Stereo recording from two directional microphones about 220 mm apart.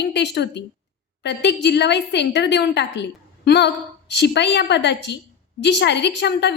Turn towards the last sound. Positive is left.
turn(degrees=50)  # may be behind; listen again after turning